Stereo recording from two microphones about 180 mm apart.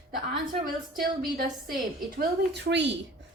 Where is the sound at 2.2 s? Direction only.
70° right (ahead or behind).